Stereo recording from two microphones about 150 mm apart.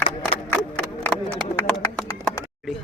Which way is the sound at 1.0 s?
5° left (ahead or behind).